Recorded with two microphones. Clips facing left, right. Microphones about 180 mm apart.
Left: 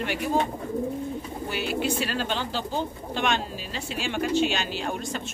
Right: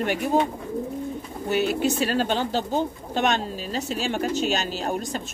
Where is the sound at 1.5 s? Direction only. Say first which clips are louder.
Right 5 dB; 45° right (ahead or behind).